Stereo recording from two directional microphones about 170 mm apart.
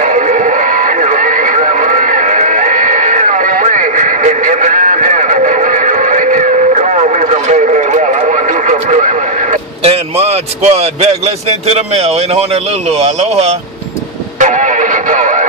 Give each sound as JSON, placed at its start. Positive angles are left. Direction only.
{"t": 0.0, "sound": "music", "side_deg": -50}